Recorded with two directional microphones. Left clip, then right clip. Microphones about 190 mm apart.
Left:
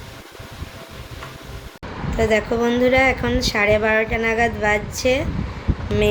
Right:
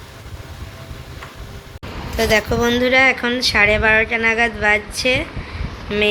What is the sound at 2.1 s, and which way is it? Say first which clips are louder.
Speech: right 2 dB; 5° left (ahead or behind).